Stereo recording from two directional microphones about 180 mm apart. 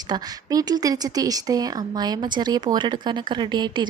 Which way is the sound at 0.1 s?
20° right (ahead or behind).